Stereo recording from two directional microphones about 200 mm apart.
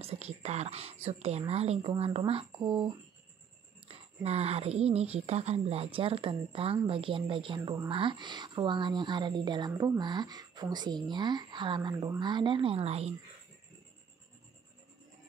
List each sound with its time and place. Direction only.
0.0 s a woman's voice: 30° right (ahead or behind)
3.9 s a woman's voice: 30° right (ahead or behind)